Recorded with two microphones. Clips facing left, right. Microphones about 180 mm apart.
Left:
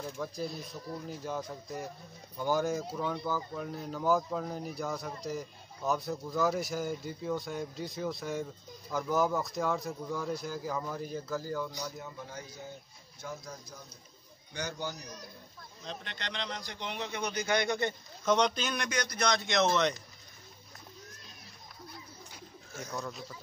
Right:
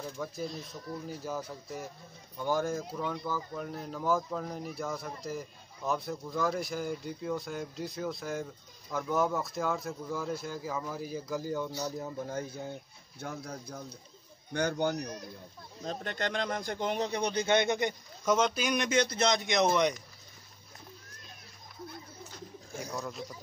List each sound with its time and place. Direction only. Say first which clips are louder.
0.0 s speech: even; centre (ahead or behind); by 11.7 s 20° right (ahead or behind)
12.0 s a man's voice: right 7 dB; 45° right (ahead or behind); by 15.1 s 60° right (ahead or behind)
15.8 s speech: right 8 dB; 45° right (ahead or behind); by 18.9 s 10° right (ahead or behind)
18.9 s speech: right 3 dB; 25° right (ahead or behind)
22.8 s speech: right 1 dB; 10° right (ahead or behind)